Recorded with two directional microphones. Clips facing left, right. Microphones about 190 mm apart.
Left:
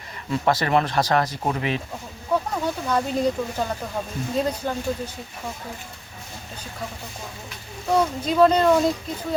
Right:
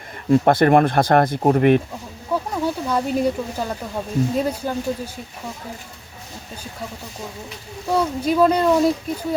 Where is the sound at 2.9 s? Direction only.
10° right (ahead or behind).